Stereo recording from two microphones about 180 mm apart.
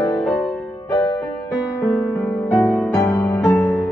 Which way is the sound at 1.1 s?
20° left (ahead or behind).